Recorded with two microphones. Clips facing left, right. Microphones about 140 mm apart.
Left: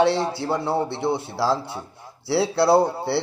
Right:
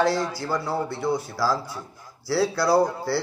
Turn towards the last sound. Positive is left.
turn(degrees=30)  # may be behind; listen again after turning